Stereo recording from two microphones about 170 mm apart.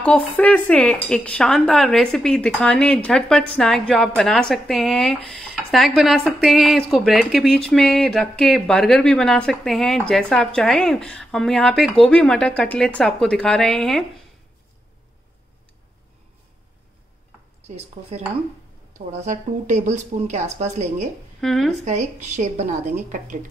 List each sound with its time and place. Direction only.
0.0 s speech: 10° left (ahead or behind)
17.6 s speech: 40° right (ahead or behind)
21.4 s speech: centre (ahead or behind)
21.8 s speech: 45° right (ahead or behind)